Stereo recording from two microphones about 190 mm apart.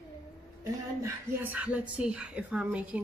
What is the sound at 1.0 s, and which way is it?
A woman's voice, 10° right (ahead or behind).